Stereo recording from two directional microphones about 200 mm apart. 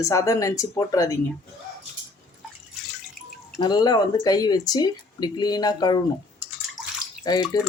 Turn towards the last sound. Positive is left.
turn(degrees=20)  # may be behind; listen again after turning